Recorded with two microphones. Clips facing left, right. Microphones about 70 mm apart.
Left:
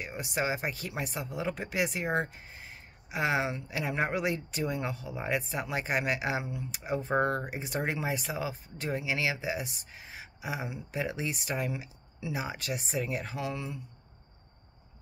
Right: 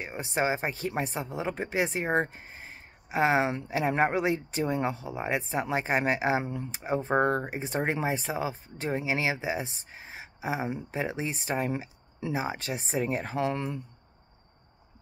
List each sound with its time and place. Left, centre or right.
0.0 s speech: right